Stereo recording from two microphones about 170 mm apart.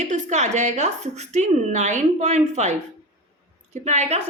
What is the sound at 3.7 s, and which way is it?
Speech, 40° right (ahead or behind).